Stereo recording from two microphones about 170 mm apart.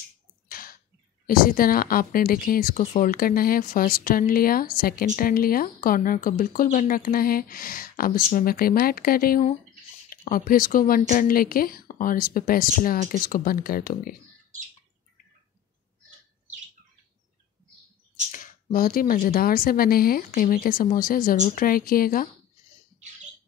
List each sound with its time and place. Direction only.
0.5 s a sound: 60° left (ahead or behind)
1.2 s speech: 60° left (ahead or behind)
18.3 s speech: 55° left (ahead or behind)